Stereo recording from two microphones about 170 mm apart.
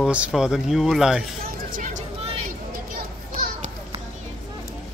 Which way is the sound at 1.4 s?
50° right (ahead or behind).